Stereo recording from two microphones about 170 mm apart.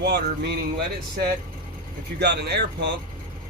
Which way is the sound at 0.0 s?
80° right.